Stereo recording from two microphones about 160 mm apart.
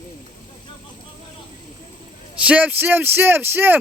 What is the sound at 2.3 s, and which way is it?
A man's voice, 10° right (ahead or behind).